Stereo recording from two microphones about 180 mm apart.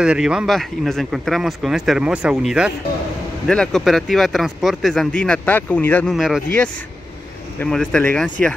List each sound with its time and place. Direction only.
0.0 s speech: 5° right (ahead or behind)
6.1 s speech: centre (ahead or behind)